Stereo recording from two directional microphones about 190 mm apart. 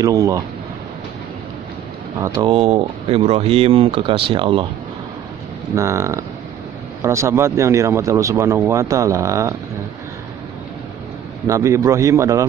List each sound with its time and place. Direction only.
0.0 s speech: 15° right (ahead or behind)
2.1 s speech: 15° right (ahead or behind)
2.4 s speech: 30° right (ahead or behind)
5.8 s speech: 15° right (ahead or behind)
11.4 s speech: 15° right (ahead or behind)